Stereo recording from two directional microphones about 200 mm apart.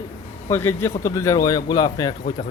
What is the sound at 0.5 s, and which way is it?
Speech, 10° left (ahead or behind).